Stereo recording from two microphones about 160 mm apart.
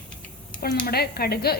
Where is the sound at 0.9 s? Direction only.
75° left (ahead or behind).